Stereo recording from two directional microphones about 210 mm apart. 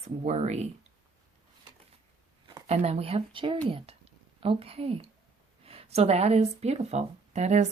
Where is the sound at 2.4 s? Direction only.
25° right (ahead or behind).